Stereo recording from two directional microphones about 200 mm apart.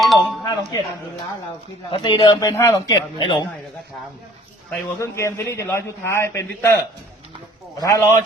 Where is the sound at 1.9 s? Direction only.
25° left (ahead or behind).